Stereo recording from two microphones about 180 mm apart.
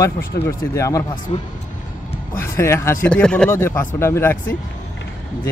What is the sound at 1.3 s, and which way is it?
Speech, 40° left (ahead or behind).